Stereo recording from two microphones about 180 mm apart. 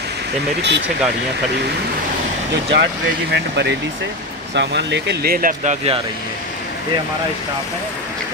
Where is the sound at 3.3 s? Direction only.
70° right (ahead or behind); by 6.0 s 40° right (ahead or behind).